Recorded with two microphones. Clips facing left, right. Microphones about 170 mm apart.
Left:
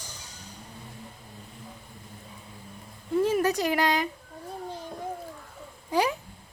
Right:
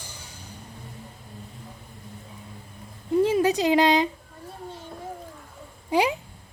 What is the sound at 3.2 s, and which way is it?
Speech, 15° right (ahead or behind).